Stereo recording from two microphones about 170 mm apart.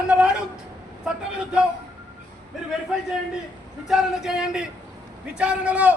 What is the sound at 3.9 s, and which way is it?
A man's voice, centre (ahead or behind).